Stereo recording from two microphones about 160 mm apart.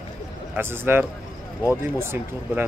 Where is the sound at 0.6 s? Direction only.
15° right (ahead or behind).